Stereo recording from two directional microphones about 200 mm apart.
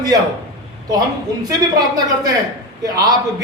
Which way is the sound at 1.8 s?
20° right (ahead or behind).